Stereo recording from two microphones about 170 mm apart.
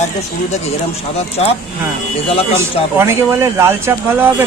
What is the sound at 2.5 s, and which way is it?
Speech, 15° right (ahead or behind).